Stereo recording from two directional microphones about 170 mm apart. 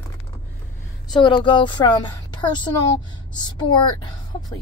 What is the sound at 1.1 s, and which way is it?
A woman's voice, 30° left (ahead or behind).